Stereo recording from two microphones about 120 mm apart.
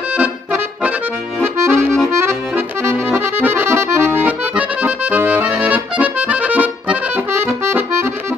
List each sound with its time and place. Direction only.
1.4 s accordion: 20° right (ahead or behind)